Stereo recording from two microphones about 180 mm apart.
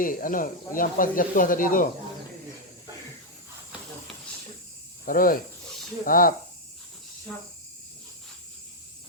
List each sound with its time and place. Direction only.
0.0 s speech: 50° left (ahead or behind)
5.0 s speech: 50° left (ahead or behind)